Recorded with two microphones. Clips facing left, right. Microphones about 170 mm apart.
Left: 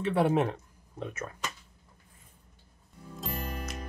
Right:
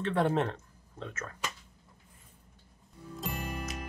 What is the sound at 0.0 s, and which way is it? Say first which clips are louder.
Speech: left 3 dB; 10° left (ahead or behind).